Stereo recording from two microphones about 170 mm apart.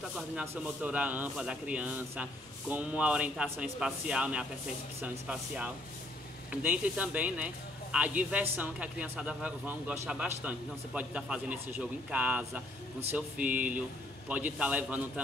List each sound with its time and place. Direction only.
0.1 s speech: 5° right (ahead or behind)
6.5 s speech: 10° right (ahead or behind)